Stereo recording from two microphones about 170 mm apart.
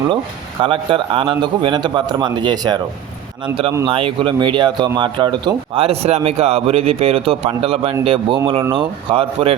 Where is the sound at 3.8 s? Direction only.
30° right (ahead or behind).